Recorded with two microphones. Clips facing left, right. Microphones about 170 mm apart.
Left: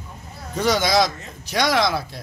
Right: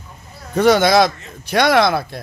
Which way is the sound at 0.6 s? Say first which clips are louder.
Right 6 dB; 60° right (ahead or behind).